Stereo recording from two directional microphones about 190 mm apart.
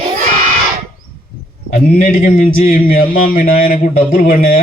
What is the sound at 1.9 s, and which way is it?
Speech, 45° left (ahead or behind).